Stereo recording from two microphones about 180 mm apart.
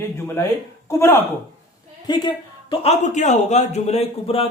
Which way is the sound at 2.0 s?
25° left (ahead or behind).